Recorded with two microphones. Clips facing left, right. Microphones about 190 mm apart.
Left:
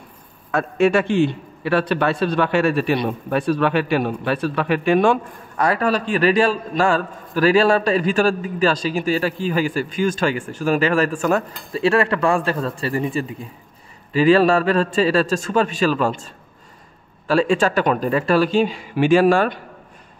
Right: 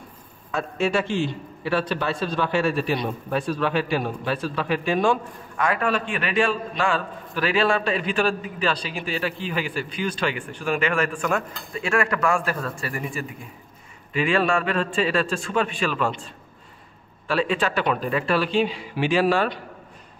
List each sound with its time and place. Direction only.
0.5 s a man's voice: 60° left (ahead or behind)
5.6 s a man's voice: 40° left (ahead or behind)
17.3 s speech: 40° left (ahead or behind)